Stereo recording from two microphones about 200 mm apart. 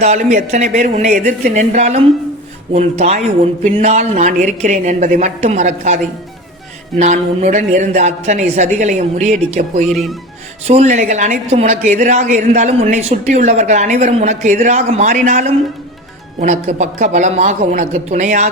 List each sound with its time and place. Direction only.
0.0 s a woman's voice: 35° right (ahead or behind)
7.0 s a woman's voice: 35° right (ahead or behind)
9.9 s speech: centre (ahead or behind)
10.7 s a woman's voice: 35° right (ahead or behind)